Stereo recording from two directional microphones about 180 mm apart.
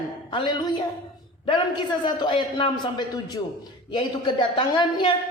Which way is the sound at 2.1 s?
25° left (ahead or behind).